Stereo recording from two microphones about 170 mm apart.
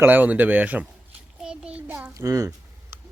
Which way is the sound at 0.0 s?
10° right (ahead or behind).